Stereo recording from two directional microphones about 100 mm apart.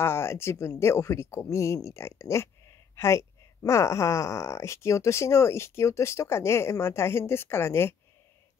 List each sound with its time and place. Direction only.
0.0 s speech: 25° left (ahead or behind)